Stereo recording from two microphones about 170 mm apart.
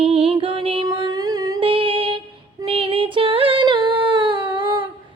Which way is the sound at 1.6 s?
35° right (ahead or behind).